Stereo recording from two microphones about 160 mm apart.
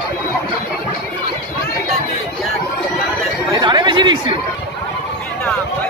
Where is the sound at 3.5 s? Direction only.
25° right (ahead or behind).